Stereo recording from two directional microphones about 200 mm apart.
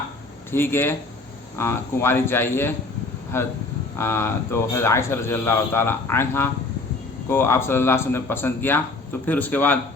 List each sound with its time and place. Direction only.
0.5 s a man's voice: 10° left (ahead or behind)